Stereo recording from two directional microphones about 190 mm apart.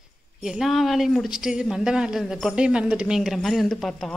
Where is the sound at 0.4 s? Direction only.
Centre (ahead or behind).